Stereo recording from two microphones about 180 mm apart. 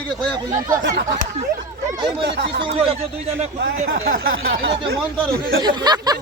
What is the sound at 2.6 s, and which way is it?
Speech, 30° right (ahead or behind).